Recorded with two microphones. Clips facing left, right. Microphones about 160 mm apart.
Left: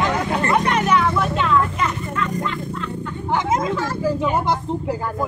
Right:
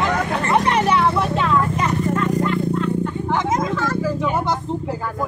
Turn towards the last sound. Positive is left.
turn(degrees=10)  # may be behind; listen again after turning